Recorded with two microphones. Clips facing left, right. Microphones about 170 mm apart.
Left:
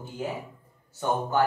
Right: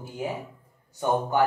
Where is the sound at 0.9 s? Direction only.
15° right (ahead or behind).